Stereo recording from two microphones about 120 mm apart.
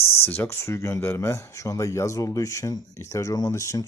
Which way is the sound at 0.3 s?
20° left (ahead or behind).